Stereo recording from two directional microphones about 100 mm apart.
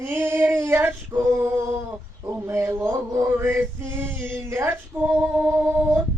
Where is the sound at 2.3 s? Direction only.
25° right (ahead or behind); by 5.5 s 10° right (ahead or behind).